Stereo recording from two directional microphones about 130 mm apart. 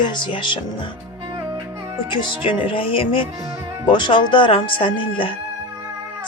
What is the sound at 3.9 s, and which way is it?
Speech, 35° left (ahead or behind).